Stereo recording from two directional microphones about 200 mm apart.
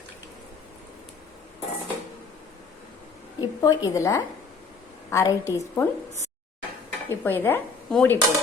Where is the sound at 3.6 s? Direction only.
15° left (ahead or behind).